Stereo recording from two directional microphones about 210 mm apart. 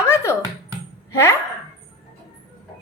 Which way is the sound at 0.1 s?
10° left (ahead or behind).